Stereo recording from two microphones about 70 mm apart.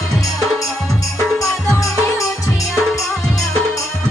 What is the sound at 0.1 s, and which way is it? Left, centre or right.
Music, left.